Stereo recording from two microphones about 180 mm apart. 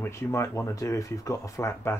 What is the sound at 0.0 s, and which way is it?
Speech, 15° left (ahead or behind).